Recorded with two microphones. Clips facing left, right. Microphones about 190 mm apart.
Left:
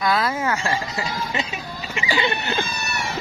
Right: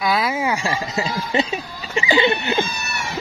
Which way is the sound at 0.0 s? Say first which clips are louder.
Right 1 dB; 10° right (ahead or behind).